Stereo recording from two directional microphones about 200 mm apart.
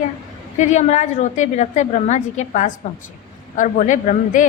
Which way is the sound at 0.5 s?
35° left (ahead or behind).